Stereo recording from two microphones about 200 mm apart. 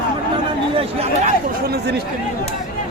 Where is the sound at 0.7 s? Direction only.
30° right (ahead or behind).